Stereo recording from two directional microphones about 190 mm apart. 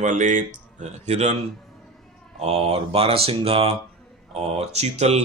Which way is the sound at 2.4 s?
35° right (ahead or behind).